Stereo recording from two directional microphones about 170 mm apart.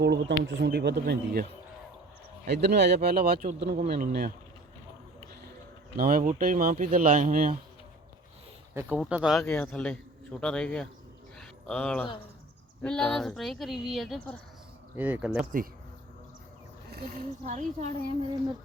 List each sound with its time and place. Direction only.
0.0 s speech: 80° right
2.5 s speech: 75° right (ahead or behind)
6.0 s speech: 60° right (ahead or behind)
8.7 s speech: 15° right (ahead or behind)
9.0 s speech: 5° right (ahead or behind)
9.4 s speech: 10° left (ahead or behind)
11.3 s dog: 5° left (ahead or behind)
12.8 s speech: 5° left (ahead or behind)
16.9 s speech: 60° right (ahead or behind)